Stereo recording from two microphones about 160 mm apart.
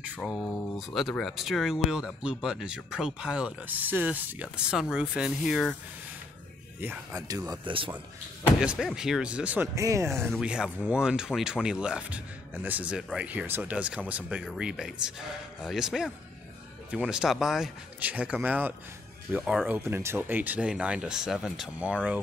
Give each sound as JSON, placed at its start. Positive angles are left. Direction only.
{"t": 0.0, "sound": "speech", "side_deg": -5}
{"t": 6.8, "sound": "speech", "side_deg": -15}
{"t": 8.5, "sound": "speech", "side_deg": -5}
{"t": 10.4, "sound": "speech", "side_deg": -5}
{"t": 19.7, "sound": "speech", "side_deg": -15}